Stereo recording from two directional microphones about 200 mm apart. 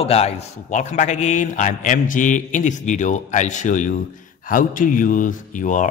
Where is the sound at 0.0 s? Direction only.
30° left (ahead or behind).